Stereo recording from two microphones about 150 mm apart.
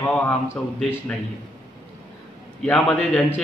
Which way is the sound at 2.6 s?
10° left (ahead or behind).